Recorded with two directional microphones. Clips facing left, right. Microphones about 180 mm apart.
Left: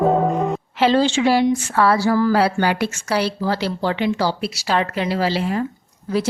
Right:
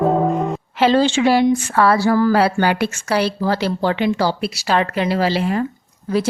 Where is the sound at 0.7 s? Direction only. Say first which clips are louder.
Right 2 dB; 55° right (ahead or behind).